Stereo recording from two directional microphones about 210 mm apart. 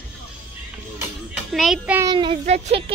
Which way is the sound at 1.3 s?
Centre (ahead or behind).